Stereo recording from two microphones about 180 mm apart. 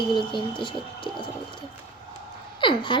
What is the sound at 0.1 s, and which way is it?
A woman's voice, 25° left (ahead or behind).